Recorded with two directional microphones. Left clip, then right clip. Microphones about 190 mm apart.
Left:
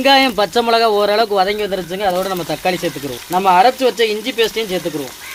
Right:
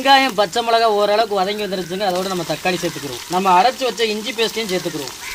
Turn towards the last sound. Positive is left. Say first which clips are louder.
# left 3 dB
turn(degrees=45)  # may be behind; listen again after turning